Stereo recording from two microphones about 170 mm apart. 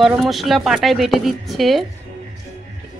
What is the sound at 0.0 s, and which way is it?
Speech, centre (ahead or behind).